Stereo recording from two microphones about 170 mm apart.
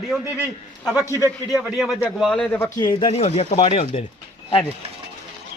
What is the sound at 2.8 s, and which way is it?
A man's voice, 30° left (ahead or behind).